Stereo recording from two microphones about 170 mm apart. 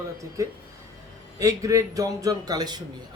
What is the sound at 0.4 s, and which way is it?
A man's voice, 15° right (ahead or behind).